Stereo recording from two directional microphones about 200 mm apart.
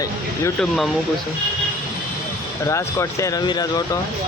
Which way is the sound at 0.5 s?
Centre (ahead or behind).